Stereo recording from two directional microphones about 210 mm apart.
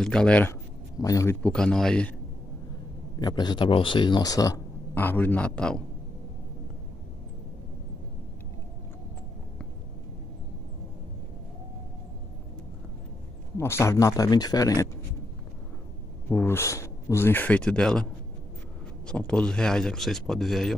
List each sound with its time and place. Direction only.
0.0 s a man's voice: 5° left (ahead or behind)
3.2 s speech: 20° left (ahead or behind); by 5.9 s 5° left (ahead or behind)
13.6 s speech: 10° left (ahead or behind)
16.3 s speech: 10° left (ahead or behind)
19.0 s a man's voice: 5° left (ahead or behind)